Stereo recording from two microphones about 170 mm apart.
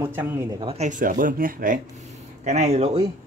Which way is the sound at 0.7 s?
45° right (ahead or behind).